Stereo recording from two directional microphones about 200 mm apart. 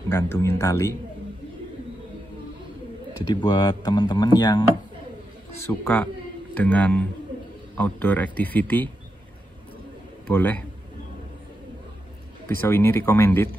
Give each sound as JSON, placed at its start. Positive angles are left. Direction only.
{"t": 0.1, "sound": "a man's voice", "side_deg": 15}
{"t": 3.3, "sound": "speech", "side_deg": 20}
{"t": 5.6, "sound": "a man's voice", "side_deg": 10}
{"t": 10.2, "sound": "a man's voice", "side_deg": 10}
{"t": 12.4, "sound": "a man's voice", "side_deg": 10}